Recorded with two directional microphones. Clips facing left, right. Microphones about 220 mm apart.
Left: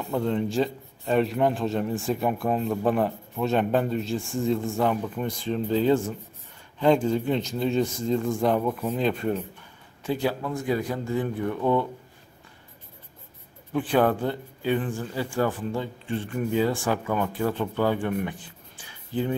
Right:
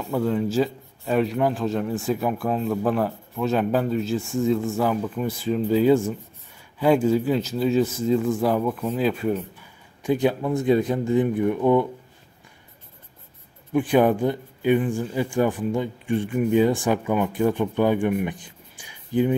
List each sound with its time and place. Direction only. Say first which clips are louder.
0.1 s a man's voice: right 3 dB; 5° right (ahead or behind)
8.6 s speech: right 2 dB; 10° left (ahead or behind)
8.9 s speech: right 3 dB; 5° right (ahead or behind)
13.7 s speech: right 4 dB; 15° right (ahead or behind)